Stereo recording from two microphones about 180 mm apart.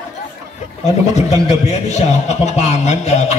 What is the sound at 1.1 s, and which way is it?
A man's voice, 35° left (ahead or behind).